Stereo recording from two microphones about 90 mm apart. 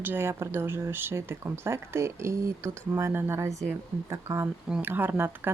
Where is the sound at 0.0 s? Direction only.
25° right (ahead or behind).